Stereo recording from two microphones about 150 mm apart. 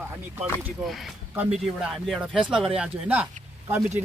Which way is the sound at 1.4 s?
5° right (ahead or behind).